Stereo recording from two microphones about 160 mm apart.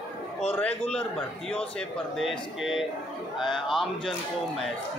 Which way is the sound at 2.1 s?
Centre (ahead or behind).